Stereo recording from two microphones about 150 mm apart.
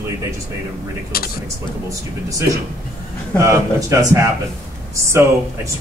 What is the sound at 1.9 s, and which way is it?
Speech, 20° right (ahead or behind).